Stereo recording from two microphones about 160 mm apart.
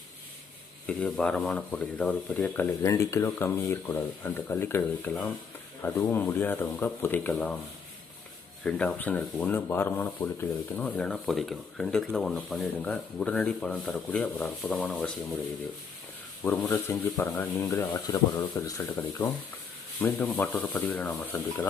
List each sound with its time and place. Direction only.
0.9 s speech: 5° left (ahead or behind)
8.6 s speech: 10° left (ahead or behind)
16.4 s speech: 15° left (ahead or behind)
18.8 s speech: 10° left (ahead or behind)